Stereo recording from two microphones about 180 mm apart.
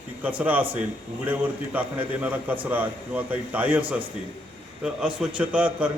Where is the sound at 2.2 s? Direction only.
10° right (ahead or behind).